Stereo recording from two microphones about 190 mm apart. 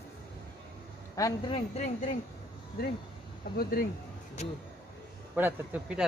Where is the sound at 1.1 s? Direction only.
20° left (ahead or behind).